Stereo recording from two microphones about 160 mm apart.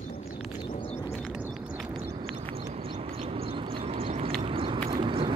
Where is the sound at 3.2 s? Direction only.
35° right (ahead or behind).